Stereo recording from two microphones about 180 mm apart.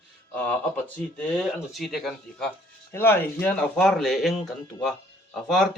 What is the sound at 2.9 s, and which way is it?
Speech, 10° left (ahead or behind).